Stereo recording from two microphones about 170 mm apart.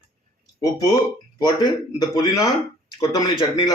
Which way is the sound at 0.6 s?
20° left (ahead or behind).